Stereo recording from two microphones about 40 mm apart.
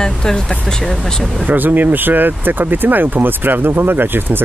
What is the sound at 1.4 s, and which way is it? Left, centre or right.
Speech, right.